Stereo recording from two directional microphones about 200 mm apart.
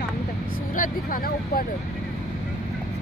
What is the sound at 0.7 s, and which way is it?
Speech, 45° left (ahead or behind).